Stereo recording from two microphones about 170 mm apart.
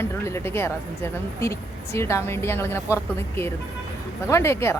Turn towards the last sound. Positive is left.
turn(degrees=15)  # may be behind; listen again after turning